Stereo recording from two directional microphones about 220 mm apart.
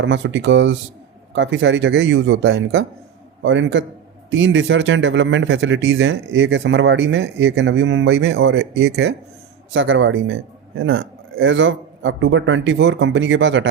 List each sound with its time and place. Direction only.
0.0 s speech: 55° right (ahead or behind)
9.7 s speech: 60° right (ahead or behind)